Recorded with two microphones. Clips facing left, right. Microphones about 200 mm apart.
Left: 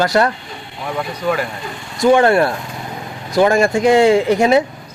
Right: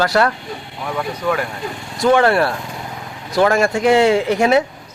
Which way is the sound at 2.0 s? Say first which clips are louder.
Left 2 dB; 15° left (ahead or behind).